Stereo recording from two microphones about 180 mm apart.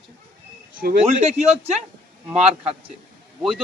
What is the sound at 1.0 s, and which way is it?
A man's voice, 35° right (ahead or behind).